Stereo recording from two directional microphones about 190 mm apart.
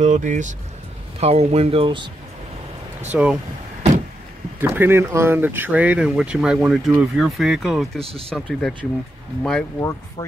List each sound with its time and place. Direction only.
0.0 s speech: 40° right (ahead or behind)
3.1 s speech: 5° right (ahead or behind)
4.6 s speech: 10° right (ahead or behind)
8.0 s speech: 30° right (ahead or behind)
8.3 s speech: 5° left (ahead or behind)
9.8 s speech: 15° left (ahead or behind)